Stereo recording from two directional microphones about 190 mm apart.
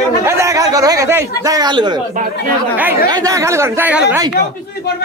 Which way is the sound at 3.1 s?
20° right (ahead or behind).